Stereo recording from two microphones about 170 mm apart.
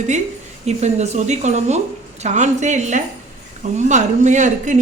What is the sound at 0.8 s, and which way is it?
Speech, 40° right (ahead or behind).